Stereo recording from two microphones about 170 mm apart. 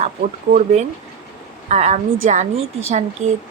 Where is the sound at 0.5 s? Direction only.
50° right (ahead or behind).